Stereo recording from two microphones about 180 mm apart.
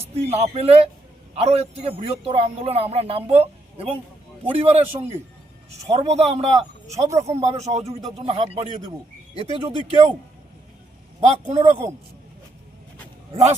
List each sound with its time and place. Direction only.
0.1 s speech: 35° right (ahead or behind)
6.9 s speech: 15° right (ahead or behind)
7.5 s speech: 35° right (ahead or behind)
11.4 s speech: 35° right (ahead or behind)
13.3 s speech: 35° right (ahead or behind)